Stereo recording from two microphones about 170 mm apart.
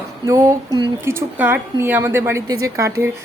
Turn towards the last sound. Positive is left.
turn(degrees=-15)  # may be behind; listen again after turning